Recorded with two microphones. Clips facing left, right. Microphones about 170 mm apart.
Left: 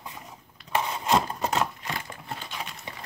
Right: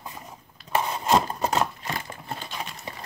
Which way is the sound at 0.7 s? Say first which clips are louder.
Right 2 dB; 40° right (ahead or behind).